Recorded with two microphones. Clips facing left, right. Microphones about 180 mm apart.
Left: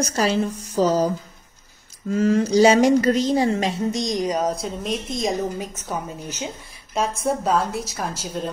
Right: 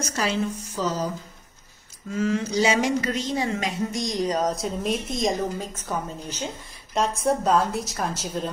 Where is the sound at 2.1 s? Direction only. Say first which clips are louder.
Left 6 dB; 40° left (ahead or behind).